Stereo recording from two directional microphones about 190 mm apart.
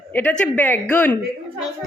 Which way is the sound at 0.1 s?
10° left (ahead or behind).